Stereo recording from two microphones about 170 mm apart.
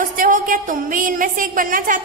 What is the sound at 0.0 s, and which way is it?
A woman's voice, 50° right (ahead or behind).